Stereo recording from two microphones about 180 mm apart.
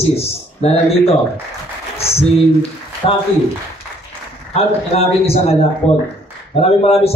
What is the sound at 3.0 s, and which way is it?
Speech, 35° left (ahead or behind).